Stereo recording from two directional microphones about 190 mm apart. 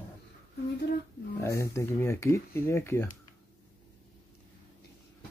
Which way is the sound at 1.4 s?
15° left (ahead or behind).